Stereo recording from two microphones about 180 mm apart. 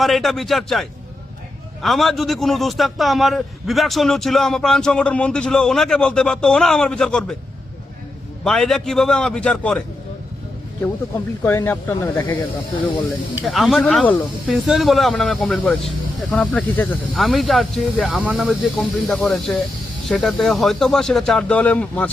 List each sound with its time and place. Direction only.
0.0 s a man's voice: centre (ahead or behind)
8.4 s a man's voice: centre (ahead or behind)
11.4 s speech: 10° left (ahead or behind)
13.4 s a man's voice: centre (ahead or behind)